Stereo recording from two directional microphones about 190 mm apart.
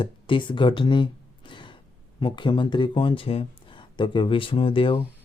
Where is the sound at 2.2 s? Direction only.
25° left (ahead or behind).